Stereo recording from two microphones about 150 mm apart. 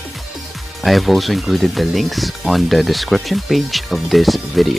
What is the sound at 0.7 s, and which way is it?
Speech, centre (ahead or behind).